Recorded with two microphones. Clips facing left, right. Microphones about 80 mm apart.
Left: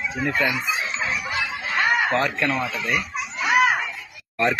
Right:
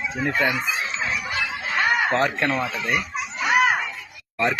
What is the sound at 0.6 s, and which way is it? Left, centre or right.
Snicker, centre.